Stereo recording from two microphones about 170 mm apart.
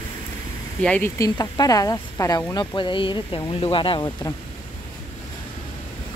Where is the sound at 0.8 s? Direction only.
5° left (ahead or behind).